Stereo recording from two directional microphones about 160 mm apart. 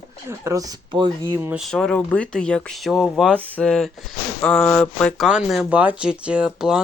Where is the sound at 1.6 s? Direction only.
Centre (ahead or behind).